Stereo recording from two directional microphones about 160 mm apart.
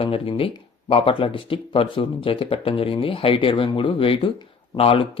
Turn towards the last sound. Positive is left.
turn(degrees=35)  # may be behind; listen again after turning